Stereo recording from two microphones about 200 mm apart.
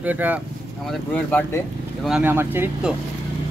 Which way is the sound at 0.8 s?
10° left (ahead or behind).